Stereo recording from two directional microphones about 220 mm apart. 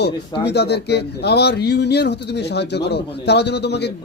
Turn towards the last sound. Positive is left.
turn(degrees=50)  # may be behind; listen again after turning